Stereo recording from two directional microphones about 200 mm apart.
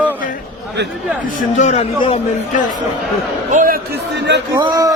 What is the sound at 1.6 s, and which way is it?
Speech, 35° left (ahead or behind).